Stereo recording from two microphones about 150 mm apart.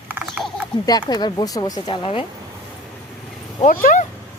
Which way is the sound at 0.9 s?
25° left (ahead or behind).